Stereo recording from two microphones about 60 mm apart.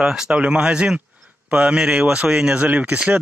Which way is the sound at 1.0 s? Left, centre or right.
Right.